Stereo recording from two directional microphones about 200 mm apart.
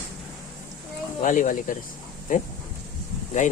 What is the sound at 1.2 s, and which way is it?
Speech, 40° left (ahead or behind).